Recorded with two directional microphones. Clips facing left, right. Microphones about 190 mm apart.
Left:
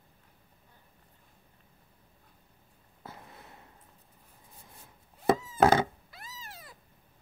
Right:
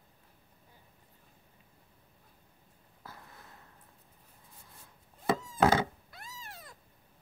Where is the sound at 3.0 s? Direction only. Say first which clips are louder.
Left 4 dB; 20° left (ahead or behind).